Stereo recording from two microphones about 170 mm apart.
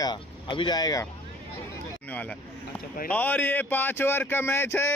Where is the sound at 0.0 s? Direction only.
25° left (ahead or behind).